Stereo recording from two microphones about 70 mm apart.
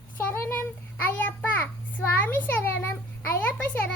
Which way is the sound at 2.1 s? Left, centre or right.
Left.